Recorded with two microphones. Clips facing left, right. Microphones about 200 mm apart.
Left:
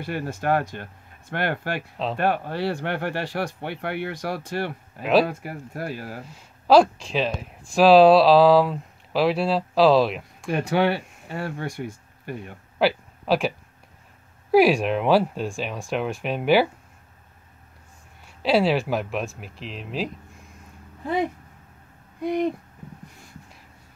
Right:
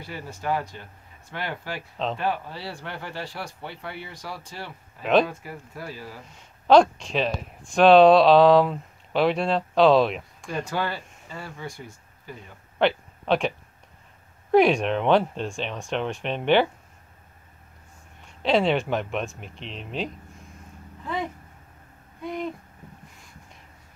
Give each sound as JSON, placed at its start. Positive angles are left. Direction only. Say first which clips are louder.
{"t": 0.0, "sound": "speech", "louder": "left 6 dB", "side_deg": 65}
{"t": 1.8, "sound": "speech", "louder": "left 1 dB", "side_deg": 5}
{"t": 2.1, "sound": "speech", "louder": "left 5 dB", "side_deg": 60}
{"t": 6.3, "sound": "speech", "louder": "even", "side_deg": 5}
{"t": 10.5, "sound": "speech", "louder": "left 7 dB", "side_deg": 70}
{"t": 12.7, "sound": "a sound", "louder": "left 1 dB", "side_deg": 5}
{"t": 14.5, "sound": "speech", "louder": "left 1 dB", "side_deg": 5}
{"t": 18.2, "sound": "speech", "louder": "left 1 dB", "side_deg": 5}
{"t": 22.2, "sound": "speech", "louder": "left 7 dB", "side_deg": 75}